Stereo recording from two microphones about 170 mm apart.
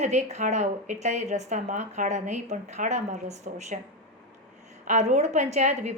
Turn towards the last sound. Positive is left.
turn(degrees=-45)  # may be behind; listen again after turning